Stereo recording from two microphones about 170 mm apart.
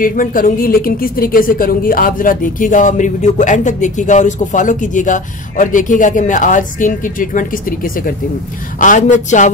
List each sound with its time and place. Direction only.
0.0 s speech: 55° left (ahead or behind)